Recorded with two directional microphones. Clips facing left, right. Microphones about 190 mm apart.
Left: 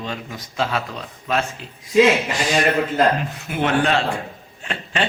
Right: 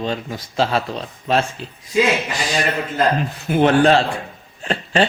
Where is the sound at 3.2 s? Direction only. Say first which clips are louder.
Right 7 dB; 35° right (ahead or behind).